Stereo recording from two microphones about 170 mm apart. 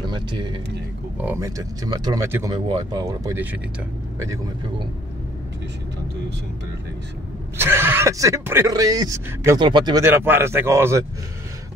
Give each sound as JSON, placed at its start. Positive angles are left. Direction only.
{"t": 0.0, "sound": "speech", "side_deg": -25}
{"t": 7.5, "sound": "speech", "side_deg": -15}
{"t": 10.0, "sound": "speech", "side_deg": -15}